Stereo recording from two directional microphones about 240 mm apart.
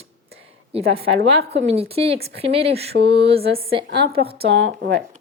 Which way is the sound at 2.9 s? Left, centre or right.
Right.